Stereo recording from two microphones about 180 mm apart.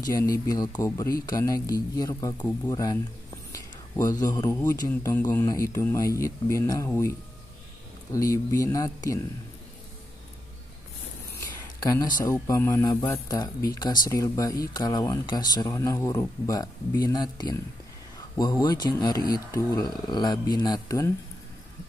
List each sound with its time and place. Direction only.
0.0 s speech: 20° left (ahead or behind)
11.3 s speech: 20° left (ahead or behind)